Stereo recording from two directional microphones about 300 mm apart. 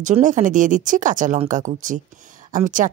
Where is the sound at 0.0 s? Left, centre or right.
Right.